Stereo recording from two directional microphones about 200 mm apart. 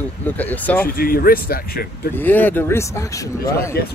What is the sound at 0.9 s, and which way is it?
Speech, 45° left (ahead or behind).